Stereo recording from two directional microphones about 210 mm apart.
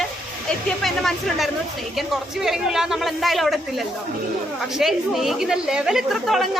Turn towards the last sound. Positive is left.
turn(degrees=0)  # may be behind; listen again after turning